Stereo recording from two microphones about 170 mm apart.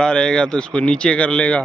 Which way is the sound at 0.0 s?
5° left (ahead or behind).